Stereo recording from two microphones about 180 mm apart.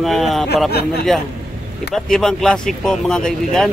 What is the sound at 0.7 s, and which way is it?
Speech, 60° left (ahead or behind).